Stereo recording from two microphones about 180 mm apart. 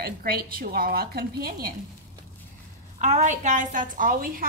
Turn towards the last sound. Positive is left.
turn(degrees=-50)  # may be behind; listen again after turning